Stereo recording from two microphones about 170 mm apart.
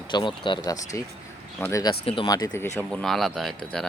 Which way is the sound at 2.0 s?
30° left (ahead or behind).